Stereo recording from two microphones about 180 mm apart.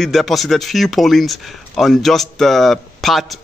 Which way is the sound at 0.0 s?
Centre (ahead or behind).